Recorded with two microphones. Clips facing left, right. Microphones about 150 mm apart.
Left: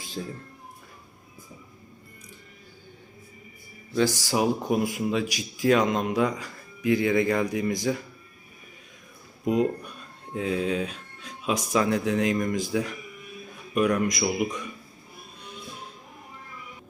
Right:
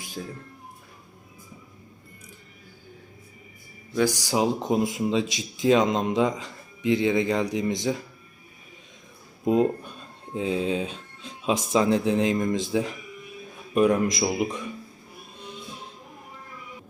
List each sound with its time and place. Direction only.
3.9 s speech: 15° right (ahead or behind)
9.4 s speech: 30° right (ahead or behind)